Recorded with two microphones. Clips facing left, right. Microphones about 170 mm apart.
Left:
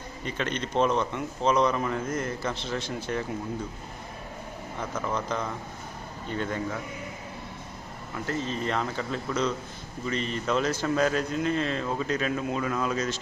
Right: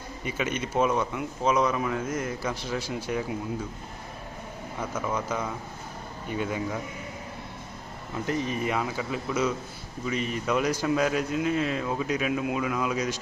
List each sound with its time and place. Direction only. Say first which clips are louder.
0.3 s speech: right 1 dB; 10° right (ahead or behind)
4.8 s speech: right 1 dB; 10° right (ahead or behind)
8.3 s speech: right 1 dB; 15° right (ahead or behind)